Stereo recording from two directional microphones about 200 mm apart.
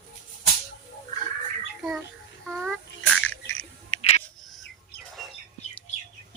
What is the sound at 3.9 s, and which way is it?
Scissors, 35° left (ahead or behind).